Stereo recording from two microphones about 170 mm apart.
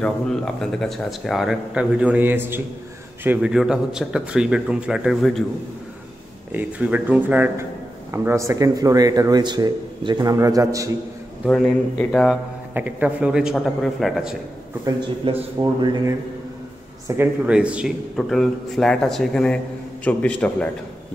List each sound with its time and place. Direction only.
0.0 s speech: 5° left (ahead or behind)
6.5 s a man's voice: 10° right (ahead or behind)
11.4 s speech: centre (ahead or behind)
12.7 s speech: 10° right (ahead or behind)
15.2 s a man's voice: 30° right (ahead or behind)
17.2 s a man's voice: 5° right (ahead or behind)